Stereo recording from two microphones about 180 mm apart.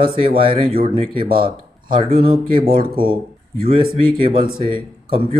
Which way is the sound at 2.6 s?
55° right (ahead or behind).